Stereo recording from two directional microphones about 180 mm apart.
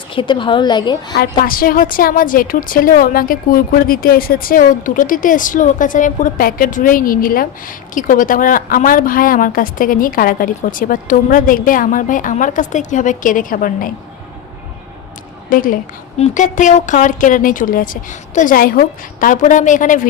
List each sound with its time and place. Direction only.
0.1 s a woman's voice: 30° left (ahead or behind)
1.1 s a woman's voice: 55° left (ahead or behind)
15.4 s a woman's voice: 50° left (ahead or behind)